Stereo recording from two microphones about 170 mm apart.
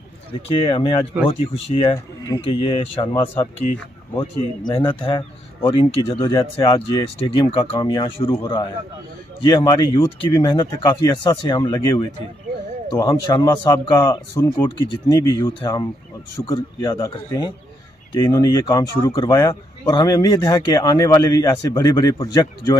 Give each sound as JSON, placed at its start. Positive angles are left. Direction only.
{"t": 0.3, "sound": "speech", "side_deg": 30}